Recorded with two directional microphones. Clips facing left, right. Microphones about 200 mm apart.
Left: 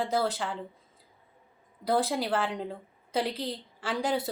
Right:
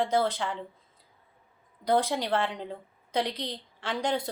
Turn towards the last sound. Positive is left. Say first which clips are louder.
# even
turn(degrees=5)  # may be behind; listen again after turning